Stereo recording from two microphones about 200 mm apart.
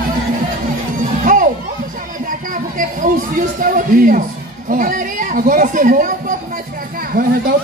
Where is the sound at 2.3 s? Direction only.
40° right (ahead or behind).